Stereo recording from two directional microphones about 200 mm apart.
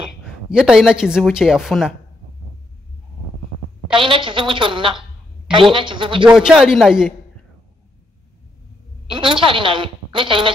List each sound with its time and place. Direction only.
0.5 s speech: 5° right (ahead or behind)
3.9 s a woman's voice: 25° right (ahead or behind)
6.2 s speech: 5° right (ahead or behind)
9.1 s a woman's voice: 25° right (ahead or behind)